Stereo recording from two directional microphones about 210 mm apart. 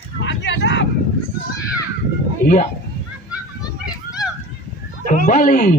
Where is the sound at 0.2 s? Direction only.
60° left (ahead or behind).